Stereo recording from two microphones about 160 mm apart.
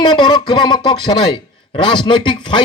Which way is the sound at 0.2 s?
30° left (ahead or behind).